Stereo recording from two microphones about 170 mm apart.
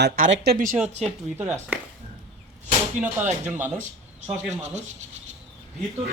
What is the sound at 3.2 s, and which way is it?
Speech, 45° right (ahead or behind).